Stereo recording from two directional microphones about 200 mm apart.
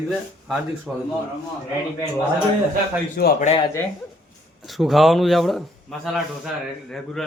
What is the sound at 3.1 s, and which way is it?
Speech, 50° left (ahead or behind).